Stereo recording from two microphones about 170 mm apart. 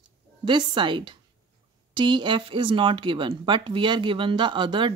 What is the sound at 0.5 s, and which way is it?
A woman's voice, 30° right (ahead or behind).